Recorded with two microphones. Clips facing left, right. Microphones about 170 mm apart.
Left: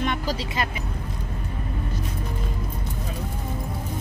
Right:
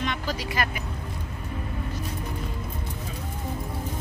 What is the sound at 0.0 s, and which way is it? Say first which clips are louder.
Vehicle: left 3 dB; 50° left (ahead or behind).